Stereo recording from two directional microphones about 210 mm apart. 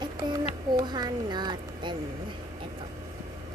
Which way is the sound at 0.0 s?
20° right (ahead or behind).